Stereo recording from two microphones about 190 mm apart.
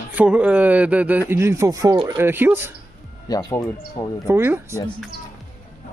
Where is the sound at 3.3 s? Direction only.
20° left (ahead or behind).